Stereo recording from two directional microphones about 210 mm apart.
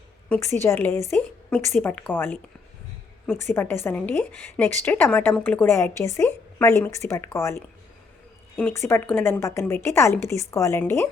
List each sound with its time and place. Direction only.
0.3 s a woman's voice: 10° left (ahead or behind)
3.4 s a woman's voice: 10° left (ahead or behind)